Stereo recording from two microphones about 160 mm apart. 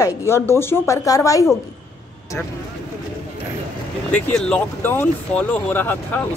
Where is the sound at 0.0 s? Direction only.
15° left (ahead or behind).